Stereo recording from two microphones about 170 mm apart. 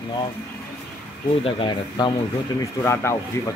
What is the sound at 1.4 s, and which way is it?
Speech, 30° left (ahead or behind).